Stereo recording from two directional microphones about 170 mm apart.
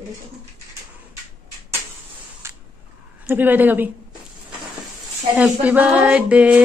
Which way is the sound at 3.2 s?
10° right (ahead or behind).